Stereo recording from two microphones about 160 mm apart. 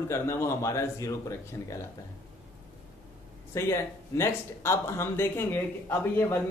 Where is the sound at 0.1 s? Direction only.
15° left (ahead or behind).